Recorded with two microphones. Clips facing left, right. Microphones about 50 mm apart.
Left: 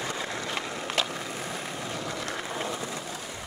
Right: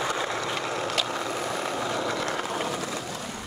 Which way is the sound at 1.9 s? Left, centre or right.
Right.